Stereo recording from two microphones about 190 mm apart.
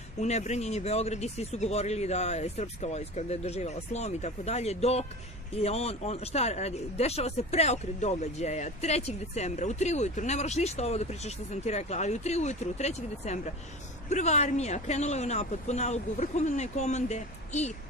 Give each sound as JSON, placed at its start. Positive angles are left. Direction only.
{"t": 0.2, "sound": "speech", "side_deg": 35}